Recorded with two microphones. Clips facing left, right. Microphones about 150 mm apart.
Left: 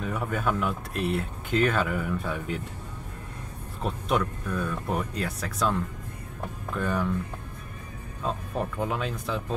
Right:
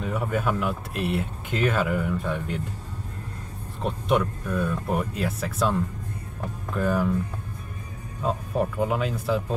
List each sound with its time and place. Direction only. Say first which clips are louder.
0.0 s speech: right 2 dB; centre (ahead or behind)
3.8 s speech: right 3 dB; centre (ahead or behind)
6.8 s speech: right 4 dB; 5° right (ahead or behind)
8.2 s speech: right 5 dB; 5° right (ahead or behind)